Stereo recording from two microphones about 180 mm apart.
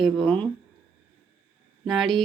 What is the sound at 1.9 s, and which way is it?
Speech, centre (ahead or behind).